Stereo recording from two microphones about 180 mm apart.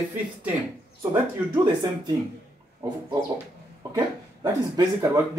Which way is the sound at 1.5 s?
20° right (ahead or behind).